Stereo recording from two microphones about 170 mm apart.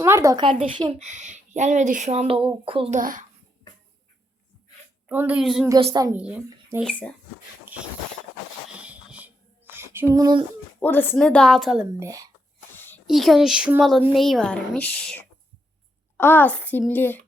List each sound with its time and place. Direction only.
0.0 s speech: 15° right (ahead or behind)
0.4 s speech: 30° right (ahead or behind)
1.0 s speech: 45° right (ahead or behind)
3.0 s speech: 55° right (ahead or behind)
5.0 s a woman's voice: 10° right (ahead or behind)
5.9 s speech: 20° right (ahead or behind)
6.1 s a woman's voice: 5° right (ahead or behind)
6.8 s a child's voice: 5° left (ahead or behind)
7.6 s a sound: 10° right (ahead or behind)
10.8 s a woman's voice: 10° left (ahead or behind)
11.9 s speech: 20° right (ahead or behind)
12.7 s a sound: 10° left (ahead or behind)
13.1 s a woman's voice: centre (ahead or behind)